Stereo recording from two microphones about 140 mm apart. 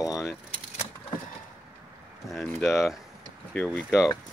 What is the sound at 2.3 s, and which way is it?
Speech, centre (ahead or behind).